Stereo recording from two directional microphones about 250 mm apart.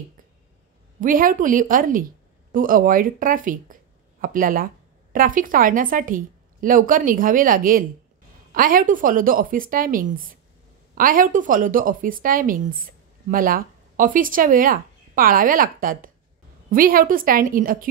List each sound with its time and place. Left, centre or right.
1.0 s a woman's voice: right